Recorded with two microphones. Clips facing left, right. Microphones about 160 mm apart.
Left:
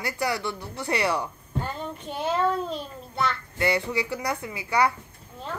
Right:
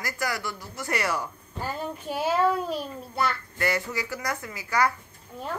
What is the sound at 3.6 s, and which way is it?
Speech, 25° left (ahead or behind).